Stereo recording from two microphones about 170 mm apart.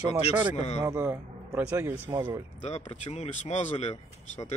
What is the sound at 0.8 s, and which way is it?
Speech, 15° right (ahead or behind).